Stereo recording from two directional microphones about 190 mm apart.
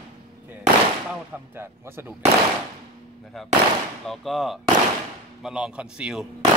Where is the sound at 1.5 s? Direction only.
10° right (ahead or behind).